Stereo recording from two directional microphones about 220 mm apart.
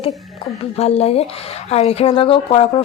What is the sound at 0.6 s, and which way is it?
A woman's voice, 30° left (ahead or behind).